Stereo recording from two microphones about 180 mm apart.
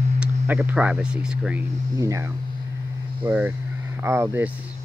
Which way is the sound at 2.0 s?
15° right (ahead or behind).